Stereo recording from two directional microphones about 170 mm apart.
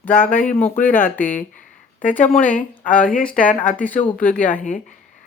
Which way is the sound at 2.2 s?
50° left (ahead or behind).